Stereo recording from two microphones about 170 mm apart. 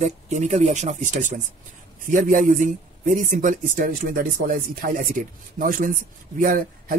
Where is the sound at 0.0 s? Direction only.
40° right (ahead or behind).